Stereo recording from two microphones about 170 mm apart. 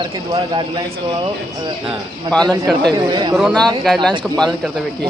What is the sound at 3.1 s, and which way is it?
Speech, 25° right (ahead or behind).